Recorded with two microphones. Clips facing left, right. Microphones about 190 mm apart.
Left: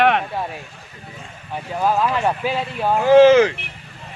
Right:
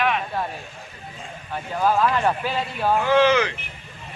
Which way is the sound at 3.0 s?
40° left (ahead or behind).